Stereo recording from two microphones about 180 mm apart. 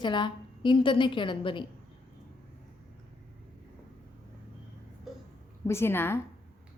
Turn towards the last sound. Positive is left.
turn(degrees=15)  # may be behind; listen again after turning